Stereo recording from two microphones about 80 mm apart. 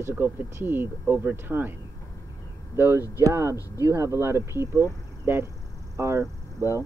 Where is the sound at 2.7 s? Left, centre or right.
Right.